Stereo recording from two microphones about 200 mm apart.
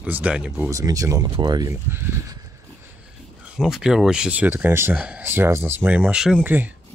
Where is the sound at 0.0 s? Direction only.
5° right (ahead or behind).